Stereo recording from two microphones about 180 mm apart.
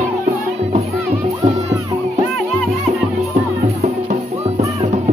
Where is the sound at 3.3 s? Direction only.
45° right (ahead or behind).